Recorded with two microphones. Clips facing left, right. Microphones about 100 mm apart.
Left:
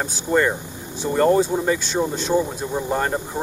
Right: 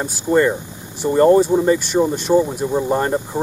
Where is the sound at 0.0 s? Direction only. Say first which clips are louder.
Right 4 dB; 5° right (ahead or behind).